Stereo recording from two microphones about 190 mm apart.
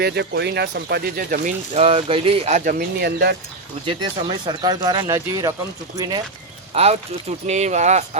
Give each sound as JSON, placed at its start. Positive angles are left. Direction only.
{"t": 0.0, "sound": "speech", "side_deg": -60}
{"t": 3.8, "sound": "speech", "side_deg": -25}
{"t": 6.7, "sound": "speech", "side_deg": -35}